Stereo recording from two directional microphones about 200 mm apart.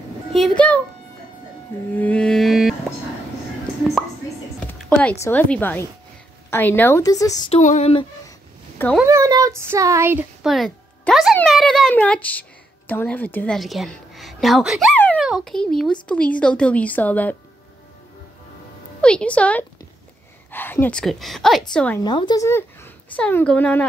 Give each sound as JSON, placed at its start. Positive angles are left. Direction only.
{"t": 0.3, "sound": "speech", "side_deg": 5}
{"t": 1.9, "sound": "music", "side_deg": 10}
{"t": 4.8, "sound": "a sound", "side_deg": 5}
{"t": 5.2, "sound": "a woman's voice", "side_deg": 10}
{"t": 7.5, "sound": "speech", "side_deg": 35}
{"t": 9.0, "sound": "a woman's voice", "side_deg": -15}
{"t": 18.9, "sound": "a woman's voice", "side_deg": 5}
{"t": 22.0, "sound": "speech", "side_deg": 20}